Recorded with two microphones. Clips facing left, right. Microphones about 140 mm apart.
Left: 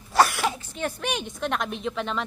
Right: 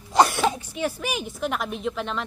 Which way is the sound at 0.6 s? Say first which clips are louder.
Right 2 dB; 10° right (ahead or behind).